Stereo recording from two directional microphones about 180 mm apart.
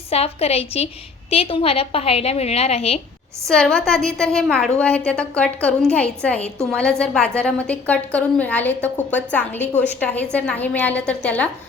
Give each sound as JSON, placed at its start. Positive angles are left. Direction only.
{"t": 0.1, "sound": "a woman's voice", "side_deg": 35}
{"t": 3.5, "sound": "a woman's voice", "side_deg": 5}